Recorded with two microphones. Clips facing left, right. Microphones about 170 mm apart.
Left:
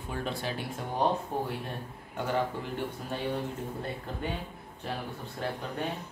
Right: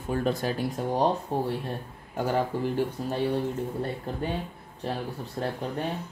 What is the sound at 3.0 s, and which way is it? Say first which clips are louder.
Speech: right 6 dB; 35° right (ahead or behind).